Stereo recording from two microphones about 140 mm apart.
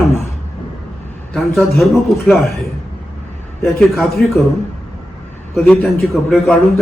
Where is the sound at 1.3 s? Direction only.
Centre (ahead or behind).